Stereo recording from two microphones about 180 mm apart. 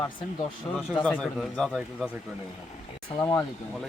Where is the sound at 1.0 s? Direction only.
5° left (ahead or behind).